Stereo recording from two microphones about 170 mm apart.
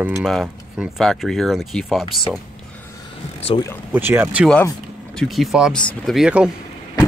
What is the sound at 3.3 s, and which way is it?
Speech, 35° left (ahead or behind).